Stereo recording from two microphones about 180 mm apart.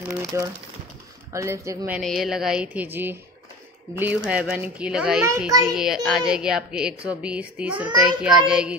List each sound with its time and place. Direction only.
0.2 s speech: 15° right (ahead or behind)
2.0 s a woman's voice: centre (ahead or behind)